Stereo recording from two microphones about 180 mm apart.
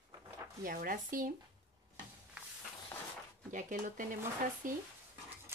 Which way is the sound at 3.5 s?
45° right (ahead or behind).